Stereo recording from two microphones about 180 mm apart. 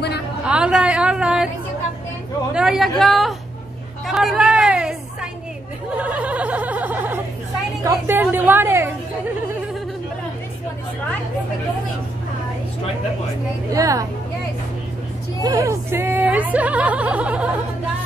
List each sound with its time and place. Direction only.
0.5 s a woman's voice: 5° right (ahead or behind)
2.5 s a woman's voice: 5° right (ahead or behind)
5.9 s a sound: 10° right (ahead or behind)
7.8 s speech: 10° right (ahead or behind)
13.7 s speech: 20° right (ahead or behind)
15.4 s speech: 20° right (ahead or behind)